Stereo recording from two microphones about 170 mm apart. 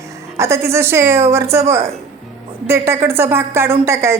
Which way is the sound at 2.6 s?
15° right (ahead or behind).